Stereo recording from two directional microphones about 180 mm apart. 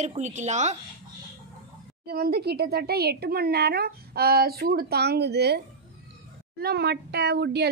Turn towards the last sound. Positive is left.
turn(degrees=-65)  # may be behind; listen again after turning